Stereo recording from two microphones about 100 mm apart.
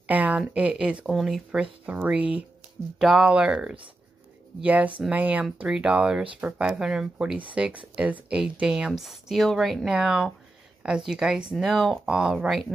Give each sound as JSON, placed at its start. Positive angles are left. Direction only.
{"t": 0.0, "sound": "speech", "side_deg": -15}